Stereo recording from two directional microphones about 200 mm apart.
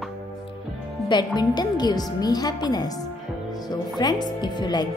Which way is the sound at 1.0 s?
20° left (ahead or behind).